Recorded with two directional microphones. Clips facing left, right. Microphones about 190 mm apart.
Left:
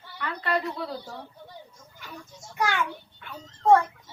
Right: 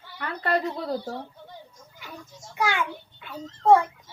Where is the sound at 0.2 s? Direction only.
45° right (ahead or behind).